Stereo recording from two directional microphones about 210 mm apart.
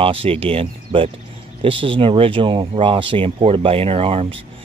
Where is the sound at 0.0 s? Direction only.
25° right (ahead or behind).